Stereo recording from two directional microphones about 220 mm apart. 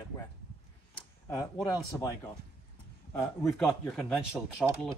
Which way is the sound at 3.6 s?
Centre (ahead or behind).